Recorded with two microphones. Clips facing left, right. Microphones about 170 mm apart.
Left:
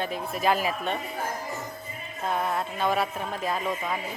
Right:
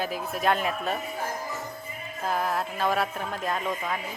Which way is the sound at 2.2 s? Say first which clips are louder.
Even; centre (ahead or behind).